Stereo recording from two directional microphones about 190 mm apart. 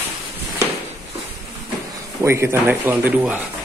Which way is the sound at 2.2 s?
15° right (ahead or behind).